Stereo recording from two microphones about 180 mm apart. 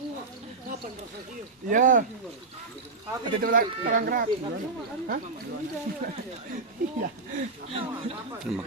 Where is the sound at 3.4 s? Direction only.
50° right (ahead or behind).